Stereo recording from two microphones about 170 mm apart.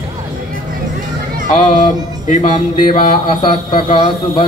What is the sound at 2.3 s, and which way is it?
Mantra, 35° left (ahead or behind).